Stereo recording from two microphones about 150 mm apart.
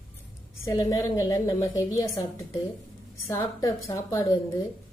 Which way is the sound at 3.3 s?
20° left (ahead or behind).